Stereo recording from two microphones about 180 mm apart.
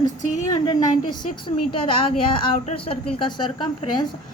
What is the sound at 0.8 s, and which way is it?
A woman's voice, 25° left (ahead or behind).